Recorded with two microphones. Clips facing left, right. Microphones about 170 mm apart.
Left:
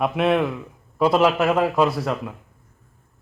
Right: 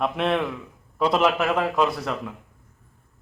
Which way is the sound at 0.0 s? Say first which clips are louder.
Left 4 dB; 5° left (ahead or behind).